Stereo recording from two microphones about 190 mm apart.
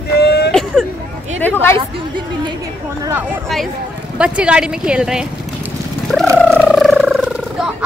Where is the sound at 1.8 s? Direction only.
25° right (ahead or behind).